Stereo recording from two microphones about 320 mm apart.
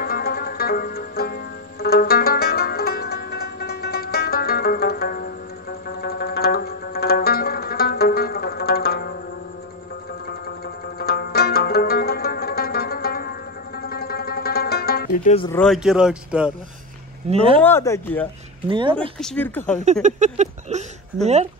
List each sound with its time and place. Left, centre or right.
0.0 s music: left
5.9 s zither: left
11.0 s zither: left
13.8 s music: left
15.5 s speech: centre
17.3 s speech: centre
17.6 s speech: centre
18.7 s speech: centre
18.9 s speech: centre
19.8 s speech: right